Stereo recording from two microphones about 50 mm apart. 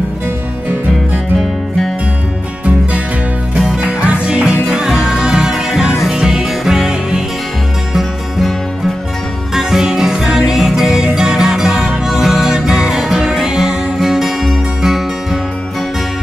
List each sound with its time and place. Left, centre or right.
1.3 s music: centre
3.5 s music: centre
9.5 s music: centre